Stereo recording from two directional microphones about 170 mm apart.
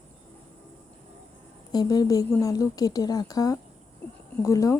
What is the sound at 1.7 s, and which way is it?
A woman's voice, 25° left (ahead or behind).